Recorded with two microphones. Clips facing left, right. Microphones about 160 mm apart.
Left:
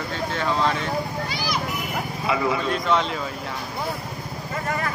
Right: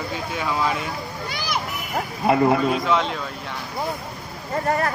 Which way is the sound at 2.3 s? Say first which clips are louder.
Right 6 dB; 55° right (ahead or behind).